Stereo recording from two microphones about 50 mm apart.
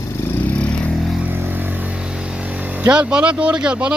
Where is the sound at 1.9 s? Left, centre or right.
Centre.